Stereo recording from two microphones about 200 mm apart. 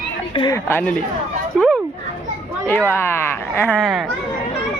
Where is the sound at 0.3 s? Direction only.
20° left (ahead or behind).